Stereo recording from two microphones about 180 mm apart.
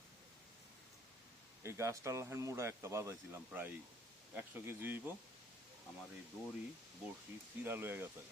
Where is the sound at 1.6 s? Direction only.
15° right (ahead or behind).